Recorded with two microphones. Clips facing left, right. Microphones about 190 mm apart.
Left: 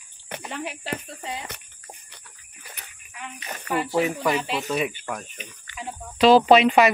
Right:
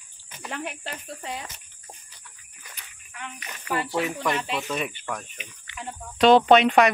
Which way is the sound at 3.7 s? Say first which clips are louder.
Left 3 dB; centre (ahead or behind).